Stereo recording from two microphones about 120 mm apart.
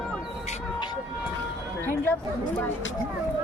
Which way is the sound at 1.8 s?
15° left (ahead or behind).